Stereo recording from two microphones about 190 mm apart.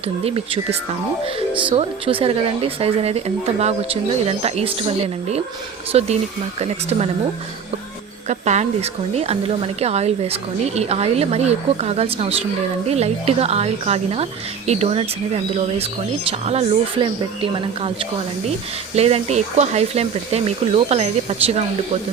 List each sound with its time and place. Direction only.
0.3 s speech: 30° right (ahead or behind)
8.3 s speech: 40° right (ahead or behind)
18.9 s speech: 35° right (ahead or behind)